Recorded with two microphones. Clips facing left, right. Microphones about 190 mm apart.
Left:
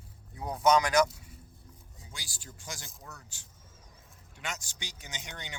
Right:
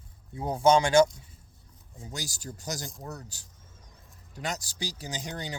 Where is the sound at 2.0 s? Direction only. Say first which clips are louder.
Right 12 dB; 40° right (ahead or behind).